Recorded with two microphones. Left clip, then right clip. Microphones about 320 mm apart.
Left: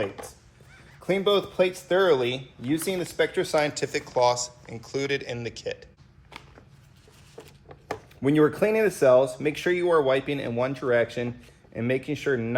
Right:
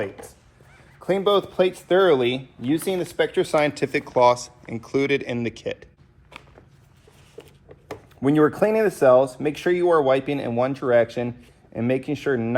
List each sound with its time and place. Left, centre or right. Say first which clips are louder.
1.0 s speech: right 3 dB; centre
6.3 s walk: right 1 dB; centre
8.2 s speech: right 3 dB; centre